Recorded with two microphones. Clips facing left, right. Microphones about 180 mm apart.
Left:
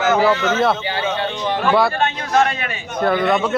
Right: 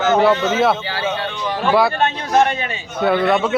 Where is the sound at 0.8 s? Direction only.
25° left (ahead or behind).